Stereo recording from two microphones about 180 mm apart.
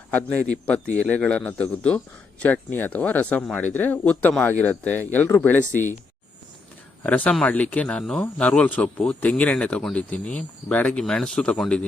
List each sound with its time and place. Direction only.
0.1 s speech: 10° left (ahead or behind)
7.0 s speech: 10° left (ahead or behind)